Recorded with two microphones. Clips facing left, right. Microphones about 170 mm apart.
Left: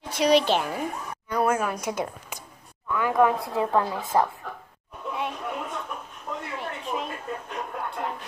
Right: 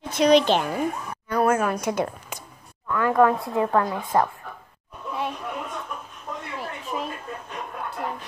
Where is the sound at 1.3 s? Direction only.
55° right (ahead or behind).